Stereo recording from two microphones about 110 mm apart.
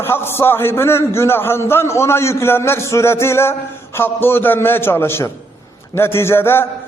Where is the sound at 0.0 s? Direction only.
20° left (ahead or behind).